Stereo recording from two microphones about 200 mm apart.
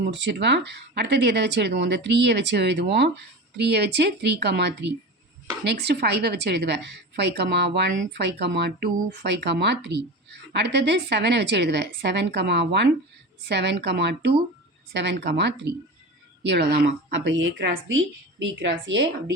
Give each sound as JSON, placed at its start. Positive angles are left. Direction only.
{"t": 0.0, "sound": "a woman's voice", "side_deg": -65}